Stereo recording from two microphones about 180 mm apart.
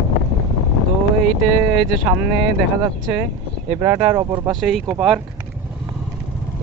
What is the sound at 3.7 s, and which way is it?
Speech, 10° right (ahead or behind).